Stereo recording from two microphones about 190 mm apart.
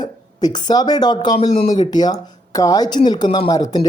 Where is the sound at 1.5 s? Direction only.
35° left (ahead or behind).